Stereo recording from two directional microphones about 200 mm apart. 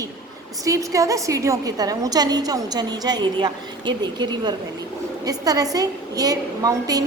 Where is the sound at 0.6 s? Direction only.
15° right (ahead or behind).